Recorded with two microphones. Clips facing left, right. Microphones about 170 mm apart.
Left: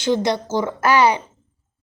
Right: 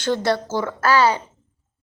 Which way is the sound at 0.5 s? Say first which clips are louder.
Left 4 dB; 15° left (ahead or behind).